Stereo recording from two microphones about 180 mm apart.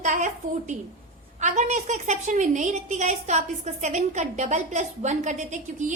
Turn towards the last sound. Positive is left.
turn(degrees=-40)  # may be behind; listen again after turning